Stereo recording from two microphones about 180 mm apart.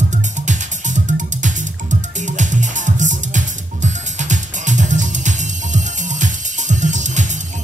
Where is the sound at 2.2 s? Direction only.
45° right (ahead or behind).